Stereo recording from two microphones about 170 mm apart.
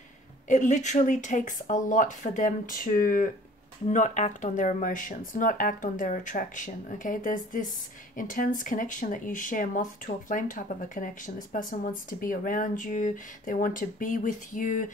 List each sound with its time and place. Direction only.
0.5 s speech: 45° left (ahead or behind)